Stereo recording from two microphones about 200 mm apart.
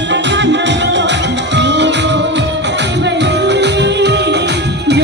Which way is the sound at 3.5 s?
60° right (ahead or behind).